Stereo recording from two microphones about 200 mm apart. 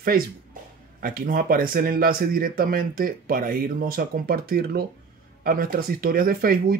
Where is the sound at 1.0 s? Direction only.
45° right (ahead or behind).